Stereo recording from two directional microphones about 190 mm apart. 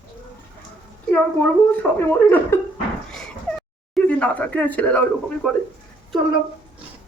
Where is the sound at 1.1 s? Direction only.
10° left (ahead or behind).